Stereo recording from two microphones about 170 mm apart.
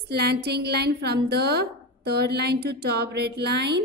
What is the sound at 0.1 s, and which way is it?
A woman's voice, 75° right (ahead or behind).